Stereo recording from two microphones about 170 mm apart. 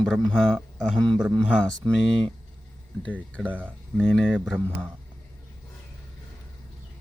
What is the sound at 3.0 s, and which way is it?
A man's voice, 10° left (ahead or behind).